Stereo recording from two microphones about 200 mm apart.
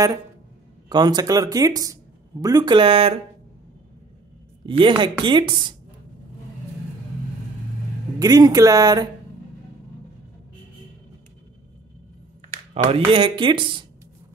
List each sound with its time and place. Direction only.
0.8 s speech: 20° right (ahead or behind)
4.6 s speech: 25° right (ahead or behind)
8.2 s speech: 20° right (ahead or behind)
12.7 s speech: 30° right (ahead or behind)